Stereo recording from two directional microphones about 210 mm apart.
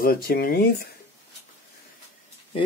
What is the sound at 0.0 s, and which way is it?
Speech, 45° left (ahead or behind).